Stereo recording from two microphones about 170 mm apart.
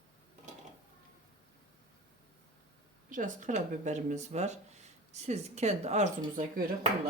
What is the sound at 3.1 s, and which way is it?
Speech, 50° right (ahead or behind).